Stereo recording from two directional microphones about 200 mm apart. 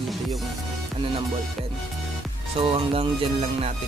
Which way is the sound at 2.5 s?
25° right (ahead or behind).